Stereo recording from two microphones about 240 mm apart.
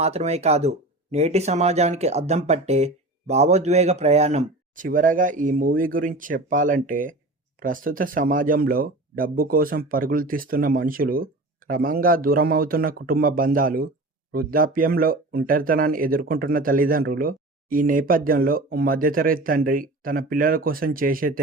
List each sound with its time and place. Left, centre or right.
0.0 s speech: right